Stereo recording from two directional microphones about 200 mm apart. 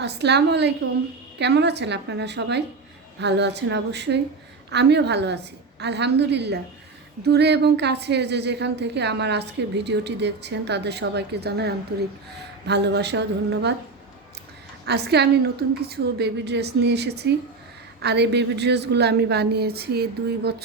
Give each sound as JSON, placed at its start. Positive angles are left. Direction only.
{"t": 0.0, "sound": "a woman's voice", "side_deg": -60}
{"t": 14.8, "sound": "a woman's voice", "side_deg": -55}